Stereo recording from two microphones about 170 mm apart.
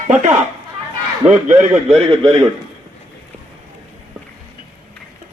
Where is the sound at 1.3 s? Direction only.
45° right (ahead or behind).